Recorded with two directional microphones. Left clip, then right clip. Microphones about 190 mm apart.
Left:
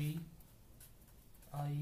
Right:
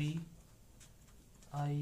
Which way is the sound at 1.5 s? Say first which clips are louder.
Right 4 dB; 25° right (ahead or behind).